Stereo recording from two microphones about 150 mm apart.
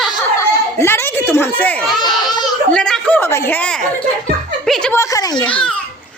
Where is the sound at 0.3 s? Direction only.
20° left (ahead or behind).